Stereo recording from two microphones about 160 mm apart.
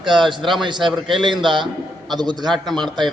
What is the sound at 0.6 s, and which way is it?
A man's voice, 30° right (ahead or behind).